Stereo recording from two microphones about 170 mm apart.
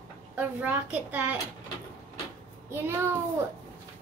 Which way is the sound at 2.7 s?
15° right (ahead or behind).